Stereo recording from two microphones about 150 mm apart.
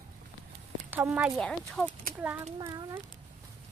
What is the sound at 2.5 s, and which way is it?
Speech, 25° right (ahead or behind).